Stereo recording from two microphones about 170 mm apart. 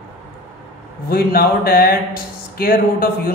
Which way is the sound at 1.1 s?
60° left (ahead or behind).